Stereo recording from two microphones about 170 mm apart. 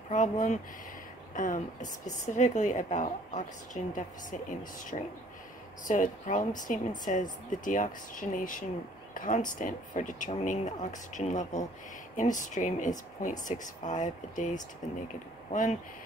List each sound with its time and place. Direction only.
0.1 s a woman's voice: 45° left (ahead or behind)
9.1 s a sound: 50° left (ahead or behind)
9.5 s a woman's voice: 50° left (ahead or behind)